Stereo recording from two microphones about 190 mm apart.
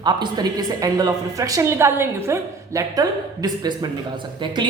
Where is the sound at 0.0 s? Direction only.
20° right (ahead or behind).